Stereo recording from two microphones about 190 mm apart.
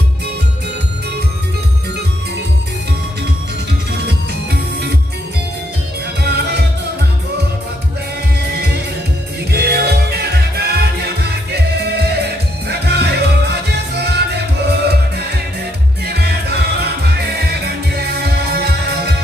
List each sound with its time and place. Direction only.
6.2 s music: 60° right (ahead or behind)
9.5 s music: 55° right (ahead or behind)